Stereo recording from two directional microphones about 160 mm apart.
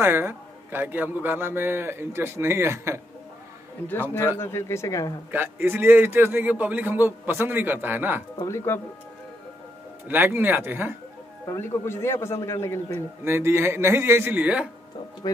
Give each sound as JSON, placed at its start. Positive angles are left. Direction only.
{"t": 0.0, "sound": "a man's voice", "side_deg": -15}
{"t": 3.8, "sound": "speech", "side_deg": 15}
{"t": 5.3, "sound": "a man's voice", "side_deg": -10}
{"t": 8.4, "sound": "speech", "side_deg": 15}
{"t": 10.0, "sound": "a man's voice", "side_deg": -10}
{"t": 11.4, "sound": "speech", "side_deg": 15}
{"t": 13.2, "sound": "a man's voice", "side_deg": -15}
{"t": 15.2, "sound": "speech", "side_deg": 25}